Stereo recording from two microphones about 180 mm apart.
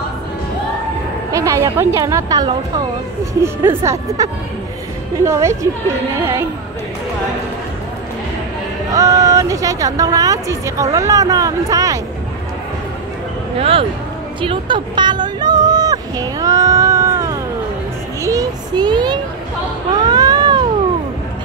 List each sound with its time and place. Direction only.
1.3 s a woman's voice: 15° right (ahead or behind)
8.9 s speech: 20° right (ahead or behind)
13.6 s speech: 30° right (ahead or behind)
14.4 s a sound: 25° right (ahead or behind)
20.0 s baby cry: 20° right (ahead or behind)